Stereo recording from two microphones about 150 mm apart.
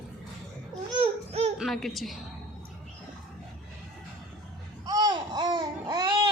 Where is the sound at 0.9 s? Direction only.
40° right (ahead or behind).